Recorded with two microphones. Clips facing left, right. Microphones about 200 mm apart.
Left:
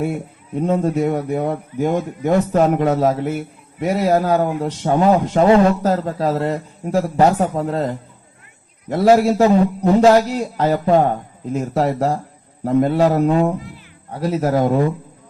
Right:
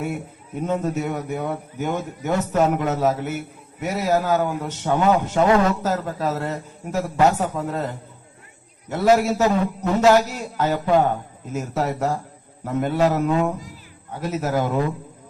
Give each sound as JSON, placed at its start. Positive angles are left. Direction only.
{"t": 0.5, "sound": "speech", "side_deg": 35}